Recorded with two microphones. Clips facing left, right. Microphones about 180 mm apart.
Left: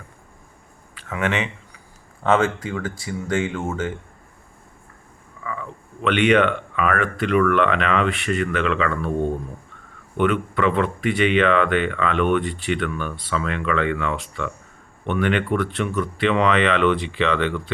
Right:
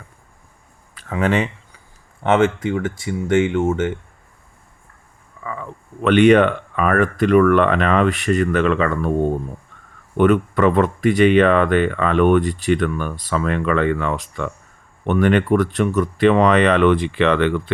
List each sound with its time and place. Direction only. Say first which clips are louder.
1.1 s speech: right 5 dB; 35° right (ahead or behind)
2.2 s speech: right 3 dB; 20° right (ahead or behind)
5.4 s a sound: right 1 dB; 35° right (ahead or behind)
6.0 s speech: right 5 dB; 40° right (ahead or behind)
10.2 s speech: right 5 dB; 40° right (ahead or behind)